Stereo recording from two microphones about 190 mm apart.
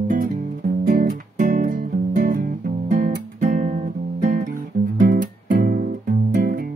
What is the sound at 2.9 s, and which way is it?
Guitar, 40° right (ahead or behind).